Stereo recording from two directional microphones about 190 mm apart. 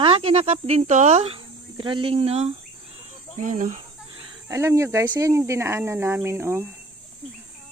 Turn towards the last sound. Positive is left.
turn(degrees=-15)  # may be behind; listen again after turning